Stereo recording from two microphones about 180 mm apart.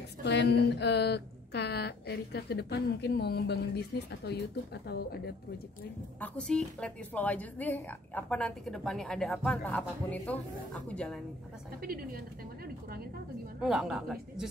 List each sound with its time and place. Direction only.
0.2 s a woman's voice: 70° left (ahead or behind)
6.1 s a woman's voice: 5° left (ahead or behind)
11.8 s a woman's voice: 55° right (ahead or behind)
13.6 s a woman's voice: 5° right (ahead or behind)